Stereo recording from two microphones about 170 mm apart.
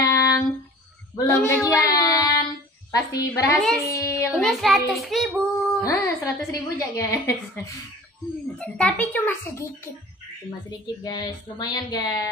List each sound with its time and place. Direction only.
0.0 s music: 20° left (ahead or behind)
1.2 s child singing: 10° left (ahead or behind)
2.9 s a child's voice: 20° left (ahead or behind)
4.3 s child singing: centre (ahead or behind)
5.8 s a woman's voice: 20° left (ahead or behind)
8.5 s a woman's voice: 5° left (ahead or behind)
11.1 s speech: 25° left (ahead or behind)